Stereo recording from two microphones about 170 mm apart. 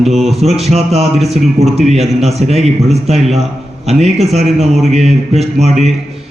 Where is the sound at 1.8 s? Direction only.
40° right (ahead or behind).